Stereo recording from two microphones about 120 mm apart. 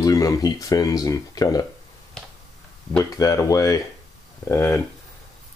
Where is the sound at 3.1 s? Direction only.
30° left (ahead or behind).